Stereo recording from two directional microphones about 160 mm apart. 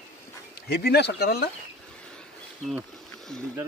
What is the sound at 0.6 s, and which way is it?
Speech, 90° left.